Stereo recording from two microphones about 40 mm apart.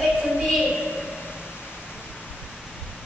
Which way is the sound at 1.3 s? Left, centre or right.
Right.